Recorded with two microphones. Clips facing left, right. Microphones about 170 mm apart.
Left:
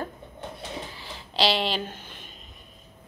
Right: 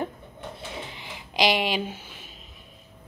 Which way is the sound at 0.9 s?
15° right (ahead or behind).